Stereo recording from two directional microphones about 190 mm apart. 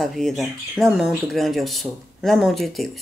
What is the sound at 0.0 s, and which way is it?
A woman's voice, centre (ahead or behind).